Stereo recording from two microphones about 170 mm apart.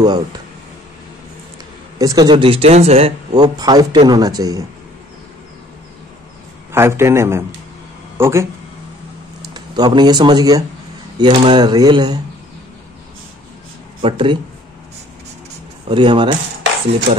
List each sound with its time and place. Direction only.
0.0 s speech: 25° right (ahead or behind)
2.0 s speech: 20° right (ahead or behind); by 3.1 s 35° right (ahead or behind)
3.5 s speech: 25° right (ahead or behind)
6.7 s a man's voice: 15° right (ahead or behind)
9.5 s speech: 25° right (ahead or behind)
14.0 s speech: 30° right (ahead or behind)
15.9 s speech: 30° right (ahead or behind)
17.1 s speech: 40° right (ahead or behind)